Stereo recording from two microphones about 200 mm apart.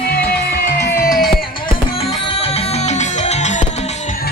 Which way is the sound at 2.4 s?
30° left (ahead or behind).